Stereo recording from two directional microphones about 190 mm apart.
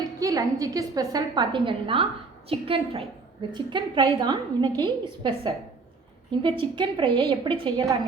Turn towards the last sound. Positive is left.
turn(degrees=-25)  # may be behind; listen again after turning